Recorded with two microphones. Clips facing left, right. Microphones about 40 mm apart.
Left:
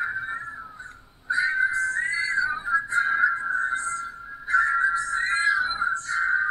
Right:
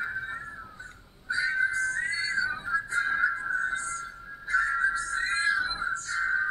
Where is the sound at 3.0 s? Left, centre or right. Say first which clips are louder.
Left 4 dB; centre.